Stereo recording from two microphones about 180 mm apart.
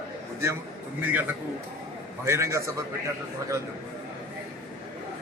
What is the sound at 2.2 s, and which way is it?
Speech, 15° right (ahead or behind).